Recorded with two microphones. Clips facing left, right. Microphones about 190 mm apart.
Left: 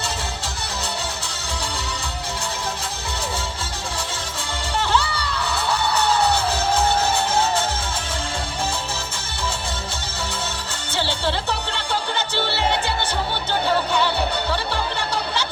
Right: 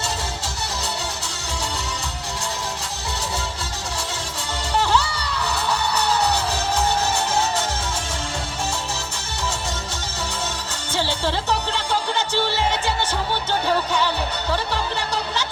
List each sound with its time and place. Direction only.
4.8 s music: 40° right (ahead or behind)
10.9 s music: 40° right (ahead or behind)